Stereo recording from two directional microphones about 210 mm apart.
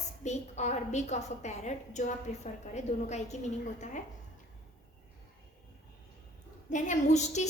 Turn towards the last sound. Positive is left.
turn(degrees=35)  # may be behind; listen again after turning